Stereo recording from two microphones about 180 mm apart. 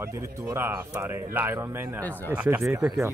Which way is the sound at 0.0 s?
15° right (ahead or behind).